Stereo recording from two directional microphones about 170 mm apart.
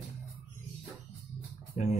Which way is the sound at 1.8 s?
45° left (ahead or behind).